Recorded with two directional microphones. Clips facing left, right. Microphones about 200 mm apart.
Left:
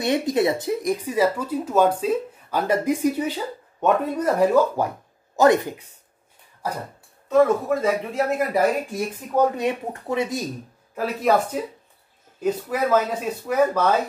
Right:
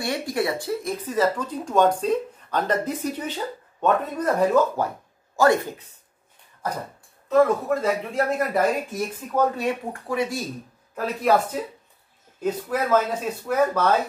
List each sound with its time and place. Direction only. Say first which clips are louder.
0.0 s speech: left 5 dB; 20° left (ahead or behind)
7.2 s speech: left 1 dB; centre (ahead or behind); by 10.4 s 20° left (ahead or behind)
11.0 s speech: left 1 dB; 5° left (ahead or behind)
12.6 s speech: even; centre (ahead or behind)